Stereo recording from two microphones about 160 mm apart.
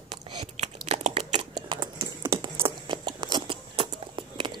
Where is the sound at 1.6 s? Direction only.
30° right (ahead or behind).